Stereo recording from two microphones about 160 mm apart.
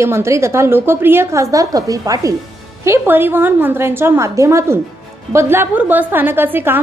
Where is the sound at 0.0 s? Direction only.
15° right (ahead or behind).